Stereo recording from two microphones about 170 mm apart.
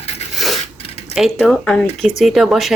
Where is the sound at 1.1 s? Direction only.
Centre (ahead or behind).